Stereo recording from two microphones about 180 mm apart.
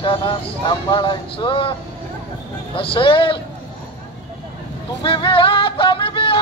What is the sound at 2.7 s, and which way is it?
Speech, 30° left (ahead or behind).